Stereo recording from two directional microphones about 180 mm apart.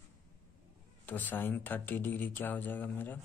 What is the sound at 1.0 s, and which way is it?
Speech, 10° left (ahead or behind).